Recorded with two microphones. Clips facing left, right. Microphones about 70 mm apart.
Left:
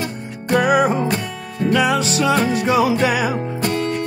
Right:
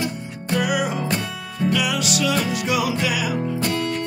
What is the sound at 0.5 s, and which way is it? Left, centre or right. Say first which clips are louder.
Music: left 7 dB; left.